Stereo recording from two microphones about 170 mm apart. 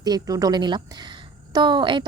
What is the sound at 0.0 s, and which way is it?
A woman's voice, 20° right (ahead or behind).